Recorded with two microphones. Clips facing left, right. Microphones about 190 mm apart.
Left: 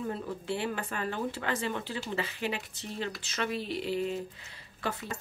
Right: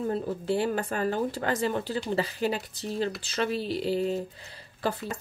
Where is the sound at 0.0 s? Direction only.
40° right (ahead or behind).